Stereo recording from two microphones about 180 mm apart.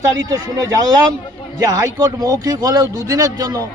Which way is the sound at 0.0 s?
20° right (ahead or behind).